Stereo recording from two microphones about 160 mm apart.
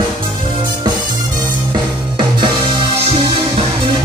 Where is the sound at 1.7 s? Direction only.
30° right (ahead or behind).